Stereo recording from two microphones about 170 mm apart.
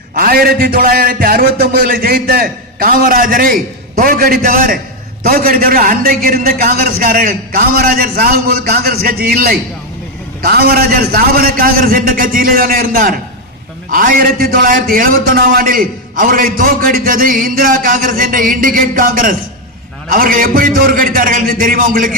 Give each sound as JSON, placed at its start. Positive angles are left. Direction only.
{"t": 0.1, "sound": "a man's voice", "side_deg": -55}